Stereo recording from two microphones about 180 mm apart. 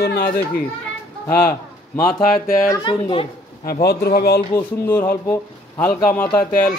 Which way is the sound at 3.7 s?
60° left (ahead or behind).